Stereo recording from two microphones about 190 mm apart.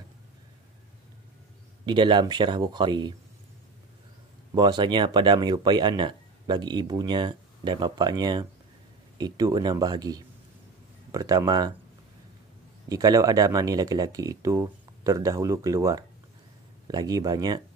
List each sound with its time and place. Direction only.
1.9 s speech: 25° right (ahead or behind)
4.6 s speech: 20° right (ahead or behind)
12.8 s speech: 20° right (ahead or behind)